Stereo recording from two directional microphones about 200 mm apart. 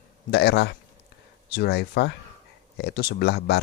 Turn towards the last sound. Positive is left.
turn(degrees=55)  # may be behind; listen again after turning